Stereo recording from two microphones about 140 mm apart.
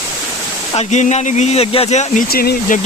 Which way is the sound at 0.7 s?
55° left (ahead or behind).